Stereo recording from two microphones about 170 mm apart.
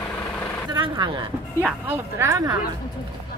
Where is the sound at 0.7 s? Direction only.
25° right (ahead or behind).